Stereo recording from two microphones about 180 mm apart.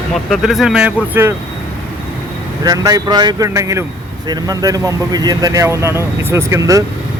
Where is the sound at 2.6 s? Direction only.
20° right (ahead or behind).